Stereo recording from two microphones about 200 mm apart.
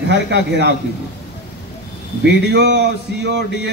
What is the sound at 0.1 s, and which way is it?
Speech, 60° right (ahead or behind).